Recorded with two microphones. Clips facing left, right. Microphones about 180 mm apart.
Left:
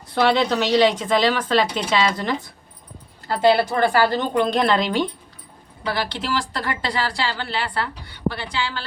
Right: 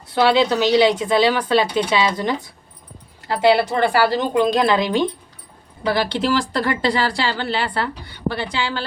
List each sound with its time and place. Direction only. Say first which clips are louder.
0.1 s speech: right 2 dB; 5° right (ahead or behind)
3.3 s speech: right 1 dB; 10° right (ahead or behind)